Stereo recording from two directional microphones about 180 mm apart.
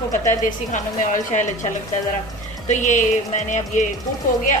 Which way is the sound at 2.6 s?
45° left (ahead or behind).